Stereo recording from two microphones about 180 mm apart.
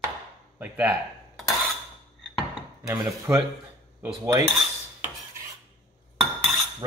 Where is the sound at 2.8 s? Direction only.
20° right (ahead or behind).